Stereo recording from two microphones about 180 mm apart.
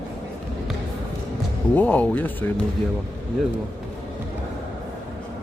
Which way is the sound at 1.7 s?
10° left (ahead or behind).